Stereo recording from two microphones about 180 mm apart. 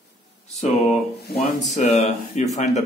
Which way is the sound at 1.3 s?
60° left (ahead or behind).